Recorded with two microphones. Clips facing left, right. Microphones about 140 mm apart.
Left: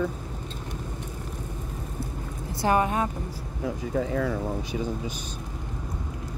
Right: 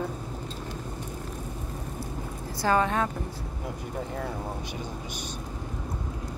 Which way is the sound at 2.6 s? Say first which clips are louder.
Left 1 dB; 20° left (ahead or behind).